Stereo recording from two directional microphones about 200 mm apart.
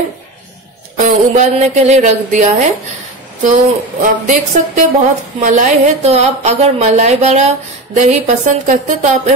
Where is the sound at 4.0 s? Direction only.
40° right (ahead or behind).